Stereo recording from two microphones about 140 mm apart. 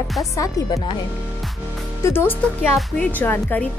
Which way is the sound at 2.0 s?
15° left (ahead or behind).